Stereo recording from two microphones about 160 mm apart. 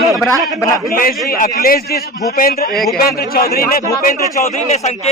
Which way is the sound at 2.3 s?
65° left (ahead or behind).